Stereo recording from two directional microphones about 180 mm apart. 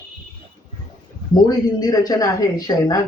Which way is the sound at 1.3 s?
20° left (ahead or behind).